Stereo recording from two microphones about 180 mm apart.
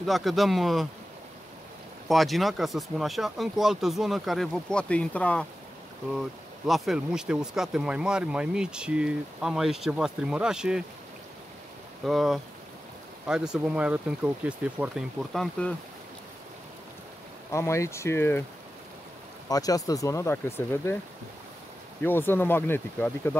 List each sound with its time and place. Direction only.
0.0 s speech: centre (ahead or behind)
2.0 s speech: centre (ahead or behind)
12.0 s speech: centre (ahead or behind)
17.5 s speech: 15° left (ahead or behind)
19.5 s speech: 20° left (ahead or behind)
22.0 s speech: 10° left (ahead or behind)